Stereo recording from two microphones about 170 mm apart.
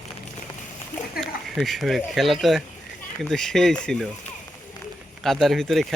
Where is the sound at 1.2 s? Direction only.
Centre (ahead or behind).